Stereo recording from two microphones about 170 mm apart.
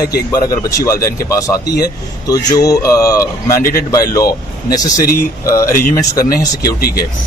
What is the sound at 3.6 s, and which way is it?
Speech, 60° left (ahead or behind).